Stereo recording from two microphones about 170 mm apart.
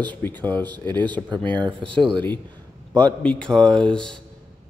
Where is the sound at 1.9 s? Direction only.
30° right (ahead or behind).